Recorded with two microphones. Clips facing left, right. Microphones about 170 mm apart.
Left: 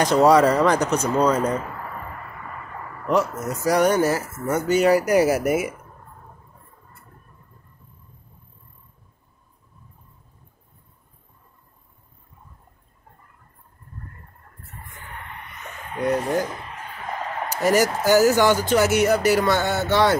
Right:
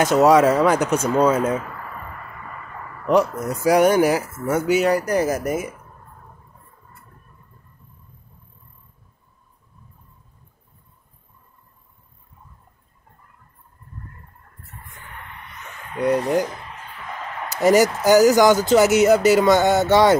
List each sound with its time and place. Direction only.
0.0 s speech: 5° right (ahead or behind)
3.1 s speech: 15° right (ahead or behind)
4.8 s speech: 5° left (ahead or behind)
17.6 s speech: 15° right (ahead or behind)